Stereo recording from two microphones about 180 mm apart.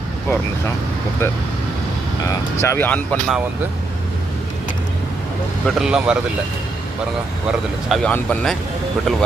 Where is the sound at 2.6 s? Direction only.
15° left (ahead or behind).